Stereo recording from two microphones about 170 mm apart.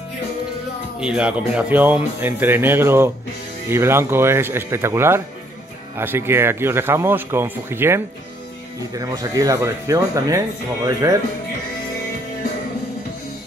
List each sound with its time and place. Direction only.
1.0 s speech: 5° right (ahead or behind)